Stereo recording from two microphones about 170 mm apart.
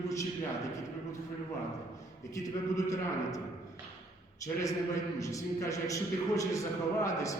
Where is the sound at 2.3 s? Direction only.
20° left (ahead or behind).